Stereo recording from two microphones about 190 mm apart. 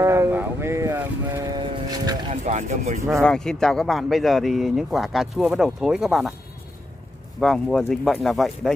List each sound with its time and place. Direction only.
0.0 s a sound: 15° right (ahead or behind)
2.4 s speech: 35° right (ahead or behind)
3.2 s speech: 5° left (ahead or behind)
7.3 s speech: centre (ahead or behind)